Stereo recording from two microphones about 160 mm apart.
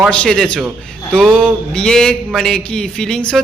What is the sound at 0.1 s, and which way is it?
A man's voice, 5° left (ahead or behind).